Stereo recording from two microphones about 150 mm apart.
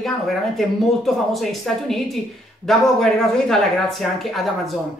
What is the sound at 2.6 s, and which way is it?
A woman's voice, 5° left (ahead or behind).